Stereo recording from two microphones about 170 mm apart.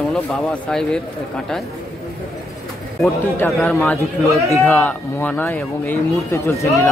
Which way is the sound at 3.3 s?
5° left (ahead or behind).